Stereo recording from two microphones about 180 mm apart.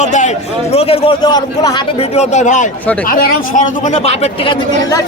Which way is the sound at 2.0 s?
40° left (ahead or behind).